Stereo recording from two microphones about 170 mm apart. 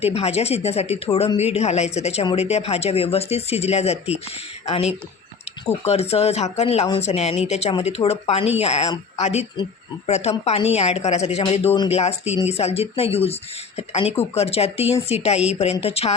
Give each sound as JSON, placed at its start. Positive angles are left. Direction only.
{"t": 0.0, "sound": "speech", "side_deg": 35}